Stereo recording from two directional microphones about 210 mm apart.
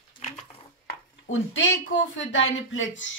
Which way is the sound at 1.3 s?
65° left (ahead or behind).